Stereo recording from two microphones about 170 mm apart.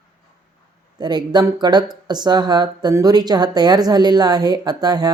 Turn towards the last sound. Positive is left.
turn(degrees=-25)  # may be behind; listen again after turning